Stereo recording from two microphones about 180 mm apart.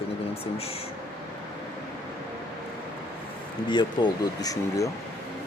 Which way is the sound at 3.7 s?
25° left (ahead or behind).